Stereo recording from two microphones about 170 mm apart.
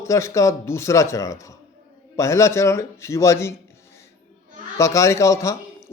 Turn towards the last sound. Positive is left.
turn(degrees=15)  # may be behind; listen again after turning